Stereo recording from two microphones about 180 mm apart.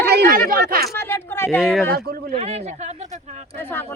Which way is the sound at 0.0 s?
60° right (ahead or behind).